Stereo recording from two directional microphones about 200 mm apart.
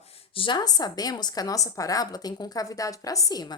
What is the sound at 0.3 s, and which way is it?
A woman's voice, 25° left (ahead or behind).